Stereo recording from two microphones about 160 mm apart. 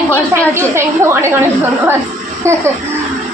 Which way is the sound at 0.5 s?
15° right (ahead or behind).